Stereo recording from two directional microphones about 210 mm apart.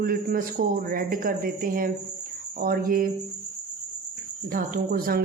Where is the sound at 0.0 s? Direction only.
45° right (ahead or behind).